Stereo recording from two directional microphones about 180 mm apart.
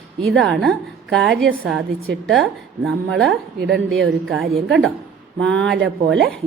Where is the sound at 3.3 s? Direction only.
70° right (ahead or behind).